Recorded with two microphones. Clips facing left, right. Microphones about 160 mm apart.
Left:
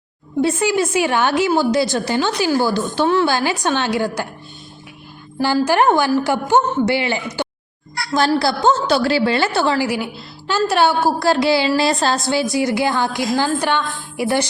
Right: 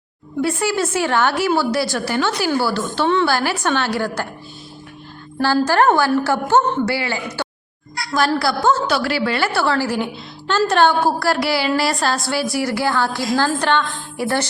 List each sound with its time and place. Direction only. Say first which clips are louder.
0.4 s a woman's voice: left 2 dB; 20° left (ahead or behind)
5.6 s a woman's voice: left 1 dB; 15° left (ahead or behind)
11.3 s a woman's voice: left 3 dB; 20° left (ahead or behind)